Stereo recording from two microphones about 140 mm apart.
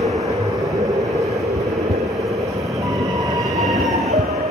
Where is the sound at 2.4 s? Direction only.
20° right (ahead or behind).